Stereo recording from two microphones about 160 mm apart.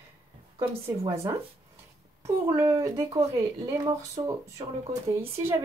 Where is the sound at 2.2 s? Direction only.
20° right (ahead or behind).